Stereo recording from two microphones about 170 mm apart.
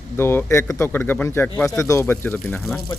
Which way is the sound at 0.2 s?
15° left (ahead or behind).